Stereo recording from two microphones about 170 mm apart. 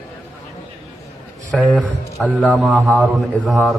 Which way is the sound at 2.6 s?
Centre (ahead or behind).